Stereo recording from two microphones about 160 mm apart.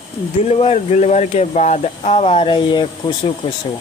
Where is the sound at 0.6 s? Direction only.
40° left (ahead or behind).